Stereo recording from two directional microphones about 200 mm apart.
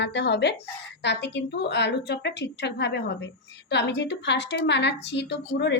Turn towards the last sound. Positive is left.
turn(degrees=60)  # may be behind; listen again after turning